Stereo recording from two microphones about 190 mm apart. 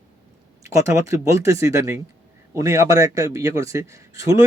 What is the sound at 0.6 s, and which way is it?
A man's voice, 15° right (ahead or behind).